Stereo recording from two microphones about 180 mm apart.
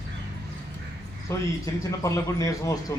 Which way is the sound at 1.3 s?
15° left (ahead or behind).